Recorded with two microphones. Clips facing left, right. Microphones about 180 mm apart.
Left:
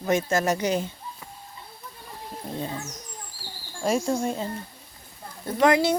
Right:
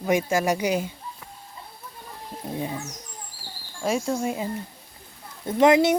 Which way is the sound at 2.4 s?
15° right (ahead or behind).